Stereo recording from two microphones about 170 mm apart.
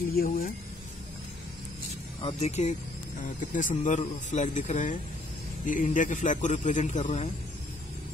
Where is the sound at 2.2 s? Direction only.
40° left (ahead or behind).